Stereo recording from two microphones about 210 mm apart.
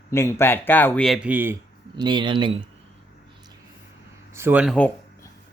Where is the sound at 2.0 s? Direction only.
20° right (ahead or behind).